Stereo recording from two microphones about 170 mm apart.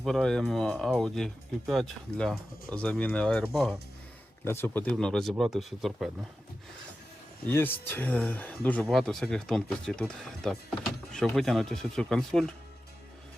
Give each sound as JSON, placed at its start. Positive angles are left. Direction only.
{"t": 0.0, "sound": "speech", "side_deg": 5}
{"t": 4.4, "sound": "speech", "side_deg": 15}
{"t": 7.4, "sound": "speech", "side_deg": 10}